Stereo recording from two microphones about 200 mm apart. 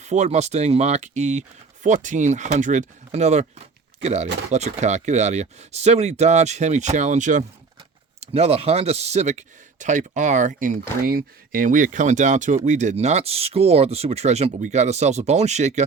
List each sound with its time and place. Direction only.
0.0 s speech: 35° right (ahead or behind)